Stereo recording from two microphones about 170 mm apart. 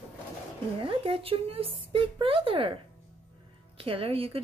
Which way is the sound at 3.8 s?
35° right (ahead or behind).